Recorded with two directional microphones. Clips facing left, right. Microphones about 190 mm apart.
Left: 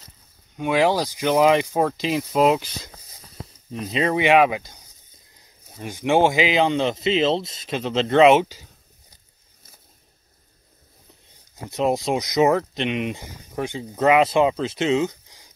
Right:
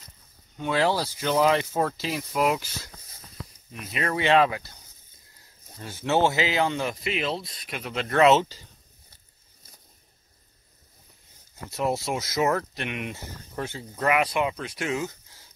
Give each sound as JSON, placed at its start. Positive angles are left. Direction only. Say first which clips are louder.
{"t": 0.6, "sound": "speech", "louder": "left 5 dB", "side_deg": 15}
{"t": 11.6, "sound": "speech", "louder": "left 5 dB", "side_deg": 20}